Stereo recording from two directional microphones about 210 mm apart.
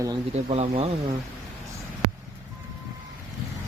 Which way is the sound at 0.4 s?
30° right (ahead or behind).